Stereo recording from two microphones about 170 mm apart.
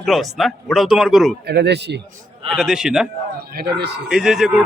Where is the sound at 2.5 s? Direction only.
Centre (ahead or behind).